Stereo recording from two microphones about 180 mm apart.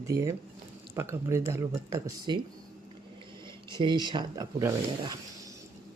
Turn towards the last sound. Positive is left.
turn(degrees=-20)  # may be behind; listen again after turning